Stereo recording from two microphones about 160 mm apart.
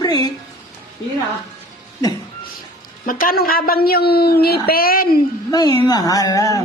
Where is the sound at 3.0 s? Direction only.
65° left (ahead or behind).